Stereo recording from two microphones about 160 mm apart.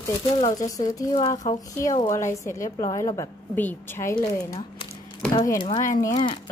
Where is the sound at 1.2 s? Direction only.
35° left (ahead or behind).